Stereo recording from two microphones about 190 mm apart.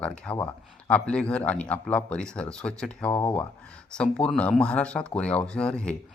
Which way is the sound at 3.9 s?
5° left (ahead or behind).